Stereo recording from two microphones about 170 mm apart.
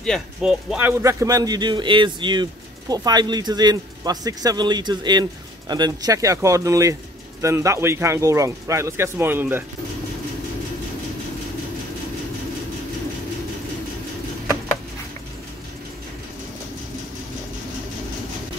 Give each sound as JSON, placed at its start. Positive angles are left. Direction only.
{"t": 0.0, "sound": "speech", "side_deg": 0}
{"t": 1.2, "sound": "speech", "side_deg": -20}